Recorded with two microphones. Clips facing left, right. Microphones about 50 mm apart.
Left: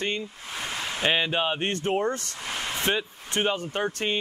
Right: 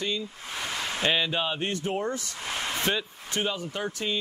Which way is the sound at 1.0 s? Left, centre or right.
Left.